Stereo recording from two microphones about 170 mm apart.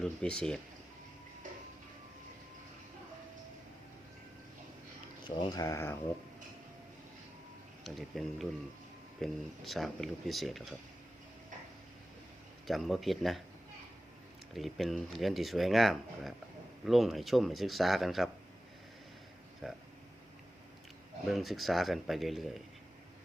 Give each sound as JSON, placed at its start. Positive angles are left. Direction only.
{"t": 0.0, "sound": "speech", "side_deg": 5}
{"t": 5.2, "sound": "speech", "side_deg": 25}
{"t": 7.9, "sound": "speech", "side_deg": 0}
{"t": 12.6, "sound": "speech", "side_deg": 0}
{"t": 14.5, "sound": "speech", "side_deg": 0}
{"t": 19.6, "sound": "speech", "side_deg": 5}
{"t": 21.2, "sound": "speech", "side_deg": 0}